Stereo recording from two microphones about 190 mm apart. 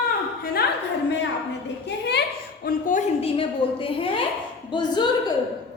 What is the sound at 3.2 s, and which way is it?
A woman's voice, 30° left (ahead or behind).